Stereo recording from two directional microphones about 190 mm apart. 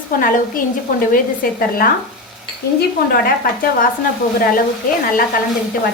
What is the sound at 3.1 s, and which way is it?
Speech, 50° left (ahead or behind).